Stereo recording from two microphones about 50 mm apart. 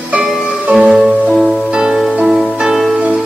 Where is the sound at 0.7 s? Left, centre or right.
Centre.